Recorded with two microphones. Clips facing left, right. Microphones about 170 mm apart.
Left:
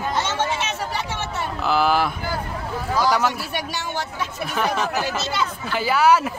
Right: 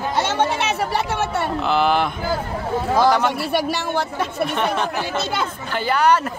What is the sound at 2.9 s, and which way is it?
A woman's voice, 55° right (ahead or behind).